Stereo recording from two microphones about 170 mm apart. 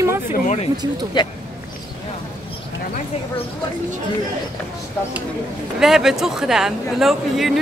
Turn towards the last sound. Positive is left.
turn(degrees=0)  # may be behind; listen again after turning